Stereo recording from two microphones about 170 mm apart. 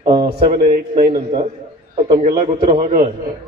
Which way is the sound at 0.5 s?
55° right (ahead or behind).